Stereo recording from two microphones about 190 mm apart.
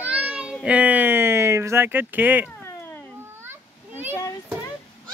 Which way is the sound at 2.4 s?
10° left (ahead or behind).